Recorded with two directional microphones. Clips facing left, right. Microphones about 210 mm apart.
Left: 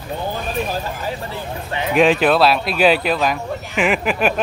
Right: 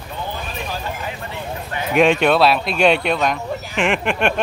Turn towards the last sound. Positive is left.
turn(degrees=5)  # may be behind; listen again after turning